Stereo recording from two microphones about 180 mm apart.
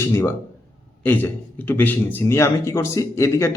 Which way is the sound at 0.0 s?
15° left (ahead or behind).